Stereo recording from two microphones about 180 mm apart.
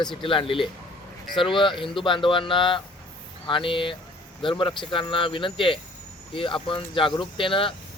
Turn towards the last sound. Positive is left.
turn(degrees=30)  # may be behind; listen again after turning